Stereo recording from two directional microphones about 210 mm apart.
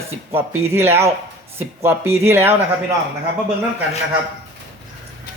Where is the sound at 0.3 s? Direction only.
10° right (ahead or behind).